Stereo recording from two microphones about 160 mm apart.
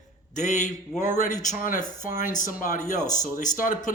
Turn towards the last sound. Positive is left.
turn(degrees=55)  # may be behind; listen again after turning